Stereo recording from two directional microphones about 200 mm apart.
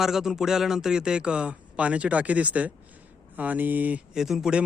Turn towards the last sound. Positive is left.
turn(degrees=0)  # may be behind; listen again after turning